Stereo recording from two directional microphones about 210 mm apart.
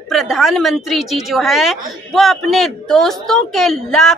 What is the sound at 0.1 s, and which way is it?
Speech, centre (ahead or behind).